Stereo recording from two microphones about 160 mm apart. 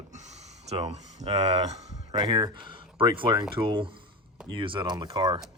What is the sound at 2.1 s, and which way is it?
Speech, 25° right (ahead or behind).